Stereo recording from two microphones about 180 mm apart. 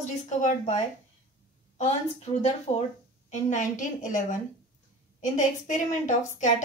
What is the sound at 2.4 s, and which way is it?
A woman's voice, 35° left (ahead or behind).